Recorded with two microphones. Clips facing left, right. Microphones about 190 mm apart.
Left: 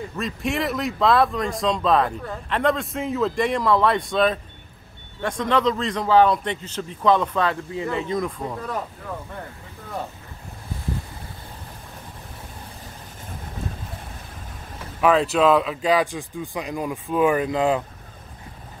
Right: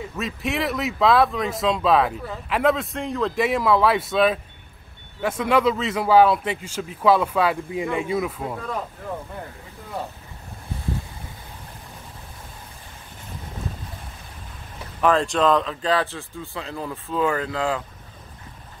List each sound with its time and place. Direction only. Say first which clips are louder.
0.2 s a man's voice: left 1 dB; centre (ahead or behind)
15.0 s speech: left 2 dB; 5° left (ahead or behind)